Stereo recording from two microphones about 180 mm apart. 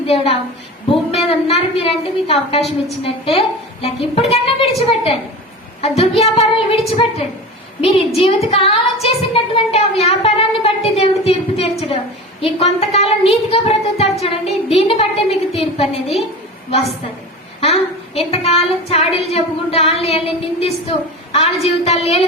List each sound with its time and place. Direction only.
0.0 s a woman's voice: 35° left (ahead or behind)
2.6 s a woman's voice: centre (ahead or behind)
3.0 s a woman's voice: 30° left (ahead or behind)
17.6 s a woman's voice: 35° left (ahead or behind)